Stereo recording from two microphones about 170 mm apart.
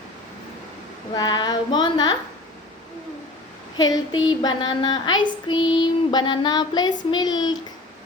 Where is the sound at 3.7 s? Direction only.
25° left (ahead or behind).